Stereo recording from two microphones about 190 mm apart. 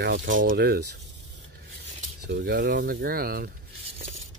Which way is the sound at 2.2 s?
55° right (ahead or behind).